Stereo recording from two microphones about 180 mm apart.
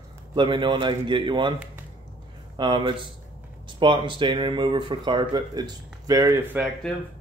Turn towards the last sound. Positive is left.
turn(degrees=5)  # may be behind; listen again after turning